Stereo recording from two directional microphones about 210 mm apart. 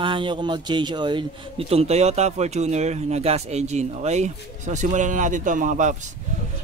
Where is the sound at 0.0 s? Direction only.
25° right (ahead or behind).